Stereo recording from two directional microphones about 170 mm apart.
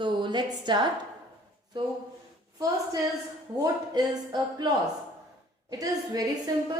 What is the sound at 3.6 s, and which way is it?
A woman's voice, 25° right (ahead or behind).